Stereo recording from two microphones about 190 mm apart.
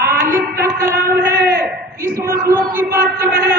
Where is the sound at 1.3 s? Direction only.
60° right (ahead or behind).